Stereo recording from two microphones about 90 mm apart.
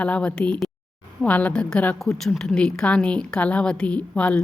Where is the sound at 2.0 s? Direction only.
5° left (ahead or behind).